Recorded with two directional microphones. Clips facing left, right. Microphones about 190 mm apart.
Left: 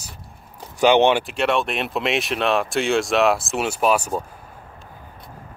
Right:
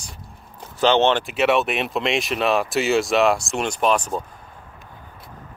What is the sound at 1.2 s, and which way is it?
Speech, 5° right (ahead or behind).